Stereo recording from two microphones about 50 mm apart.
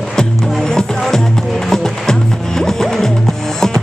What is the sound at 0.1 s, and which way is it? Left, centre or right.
Music, centre.